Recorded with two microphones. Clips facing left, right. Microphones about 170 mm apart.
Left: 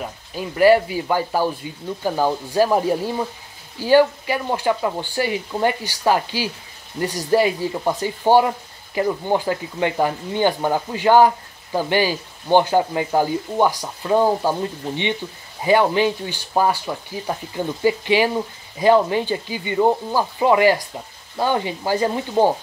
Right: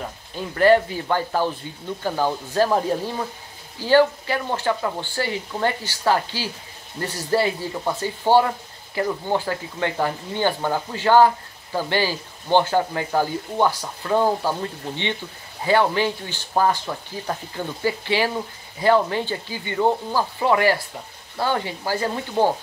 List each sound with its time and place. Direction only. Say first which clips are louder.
0.0 s speech: left 2 dB; 10° left (ahead or behind)